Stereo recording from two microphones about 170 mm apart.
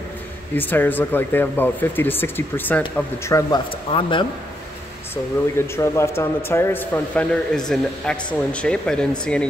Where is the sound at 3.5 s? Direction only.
30° left (ahead or behind).